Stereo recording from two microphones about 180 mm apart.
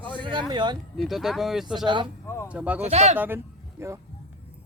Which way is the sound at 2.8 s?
35° right (ahead or behind).